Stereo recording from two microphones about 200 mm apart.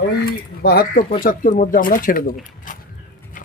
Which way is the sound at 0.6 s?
50° left (ahead or behind).